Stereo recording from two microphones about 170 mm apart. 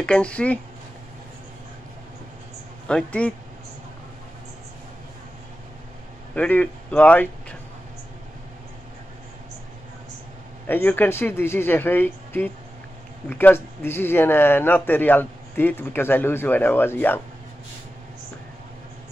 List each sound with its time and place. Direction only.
0.0 s speech: 5° left (ahead or behind)
2.9 s speech: 5° left (ahead or behind)
6.3 s speech: 10° left (ahead or behind)
10.7 s speech: 10° left (ahead or behind)